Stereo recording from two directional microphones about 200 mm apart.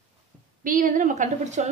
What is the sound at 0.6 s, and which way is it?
A woman's voice, 40° right (ahead or behind).